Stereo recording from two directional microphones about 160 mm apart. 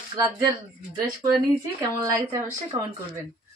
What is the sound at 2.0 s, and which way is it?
Speech, 20° right (ahead or behind).